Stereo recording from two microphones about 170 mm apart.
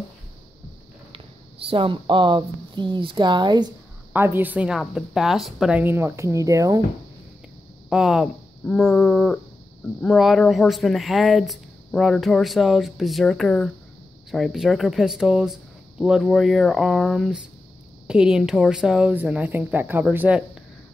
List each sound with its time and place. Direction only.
1.7 s speech: 30° right (ahead or behind)
4.1 s a woman's voice: 10° right (ahead or behind)
7.9 s speech: centre (ahead or behind)